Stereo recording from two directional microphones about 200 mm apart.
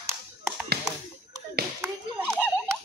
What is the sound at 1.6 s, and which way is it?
Clapping, 50° right (ahead or behind).